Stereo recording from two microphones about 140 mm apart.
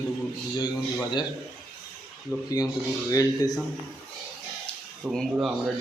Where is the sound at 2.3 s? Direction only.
20° left (ahead or behind).